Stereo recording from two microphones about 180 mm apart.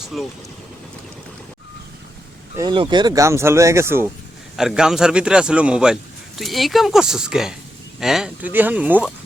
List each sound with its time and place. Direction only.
0.0 s speech: centre (ahead or behind)
2.6 s speech: 25° right (ahead or behind)
4.5 s a man's voice: 5° right (ahead or behind)